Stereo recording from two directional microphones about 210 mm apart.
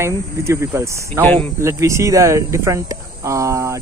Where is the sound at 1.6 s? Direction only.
15° right (ahead or behind).